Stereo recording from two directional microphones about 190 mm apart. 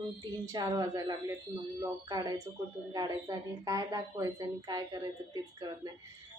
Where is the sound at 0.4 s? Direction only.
20° right (ahead or behind).